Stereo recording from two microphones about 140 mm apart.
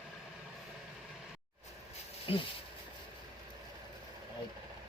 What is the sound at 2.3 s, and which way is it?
Speech, 40° left (ahead or behind).